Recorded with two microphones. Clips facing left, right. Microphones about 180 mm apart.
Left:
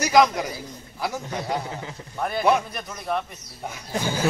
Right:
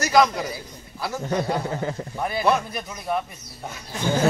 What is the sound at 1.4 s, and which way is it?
Speech, 50° right (ahead or behind).